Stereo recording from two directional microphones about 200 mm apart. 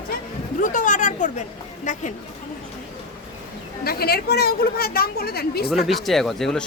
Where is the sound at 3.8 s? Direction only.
50° left (ahead or behind).